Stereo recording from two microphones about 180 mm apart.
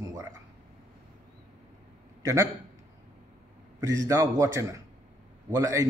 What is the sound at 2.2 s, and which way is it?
Speech, 15° right (ahead or behind).